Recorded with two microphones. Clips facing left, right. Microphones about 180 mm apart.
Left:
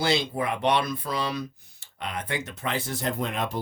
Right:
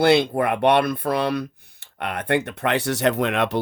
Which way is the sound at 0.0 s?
60° right (ahead or behind).